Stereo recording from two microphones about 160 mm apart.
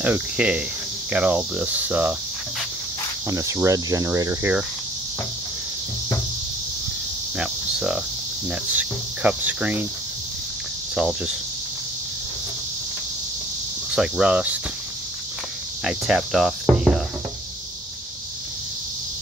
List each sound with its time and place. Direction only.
0.0 s cricket: 10° right (ahead or behind)
3.3 s cricket: 20° right (ahead or behind)
7.3 s speech: 5° right (ahead or behind)
8.5 s cricket: 10° right (ahead or behind)
11.0 s speech: 5° right (ahead or behind)
13.9 s speech: 5° right (ahead or behind)
15.8 s cricket: 5° right (ahead or behind)